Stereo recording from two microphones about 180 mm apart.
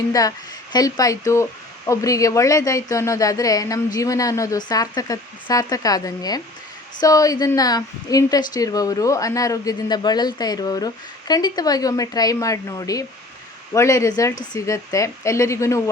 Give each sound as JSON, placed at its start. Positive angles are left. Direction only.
{"t": 0.1, "sound": "a woman's voice", "side_deg": 20}